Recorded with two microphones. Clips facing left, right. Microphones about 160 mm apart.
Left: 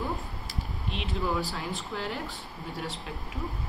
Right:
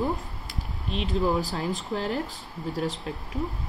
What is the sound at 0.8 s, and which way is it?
Speech, 35° right (ahead or behind).